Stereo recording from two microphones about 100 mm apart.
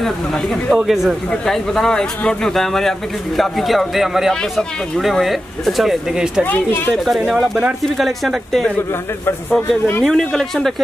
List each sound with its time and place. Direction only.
0.0 s a man's voice: centre (ahead or behind)
6.4 s speech: 20° left (ahead or behind)
6.9 s a man's voice: 5° right (ahead or behind)
9.5 s speech: 20° left (ahead or behind)
10.0 s a man's voice: 5° left (ahead or behind)